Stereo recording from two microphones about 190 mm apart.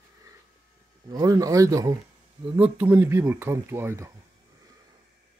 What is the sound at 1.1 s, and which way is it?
Speech, 20° right (ahead or behind).